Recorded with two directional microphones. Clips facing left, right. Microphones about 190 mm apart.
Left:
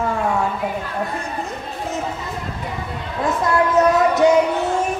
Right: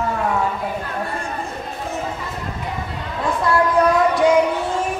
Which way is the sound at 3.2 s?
20° left (ahead or behind).